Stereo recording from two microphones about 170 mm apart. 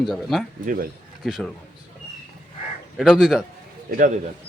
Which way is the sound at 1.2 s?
5° right (ahead or behind).